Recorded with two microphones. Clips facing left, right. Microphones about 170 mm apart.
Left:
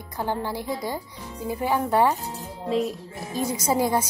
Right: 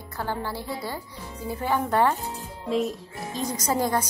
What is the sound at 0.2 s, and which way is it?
A woman's voice, 15° left (ahead or behind).